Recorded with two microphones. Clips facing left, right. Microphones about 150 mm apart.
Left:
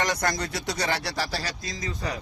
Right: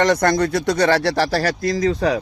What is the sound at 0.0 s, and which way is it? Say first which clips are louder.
Speech: right 11 dB; 55° right (ahead or behind).